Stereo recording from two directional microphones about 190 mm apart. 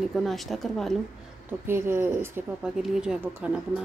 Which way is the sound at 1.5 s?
10° right (ahead or behind).